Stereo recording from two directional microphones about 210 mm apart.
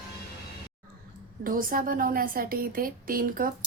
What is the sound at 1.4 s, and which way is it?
A woman's voice, 40° right (ahead or behind).